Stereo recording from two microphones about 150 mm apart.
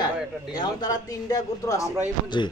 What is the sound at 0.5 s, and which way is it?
A man's voice, 25° left (ahead or behind).